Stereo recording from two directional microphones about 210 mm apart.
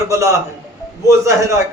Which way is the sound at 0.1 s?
15° right (ahead or behind).